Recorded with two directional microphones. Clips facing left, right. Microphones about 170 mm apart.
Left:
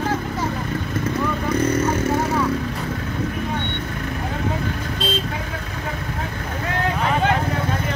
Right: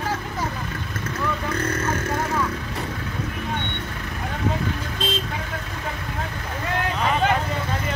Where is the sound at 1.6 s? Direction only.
10° left (ahead or behind).